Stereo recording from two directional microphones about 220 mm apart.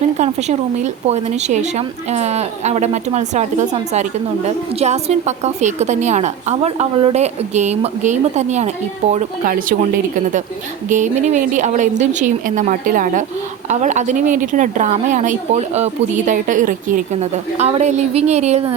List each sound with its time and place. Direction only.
0.2 s a woman's voice: 30° right (ahead or behind)
10.8 s a woman's voice: 35° right (ahead or behind)